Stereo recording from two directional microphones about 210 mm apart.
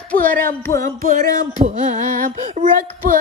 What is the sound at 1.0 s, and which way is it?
Child singing, 40° right (ahead or behind).